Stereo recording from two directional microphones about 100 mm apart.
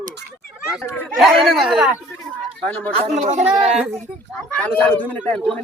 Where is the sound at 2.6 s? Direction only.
15° left (ahead or behind).